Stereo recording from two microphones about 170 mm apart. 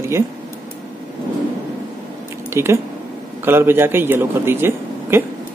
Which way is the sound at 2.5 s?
15° right (ahead or behind).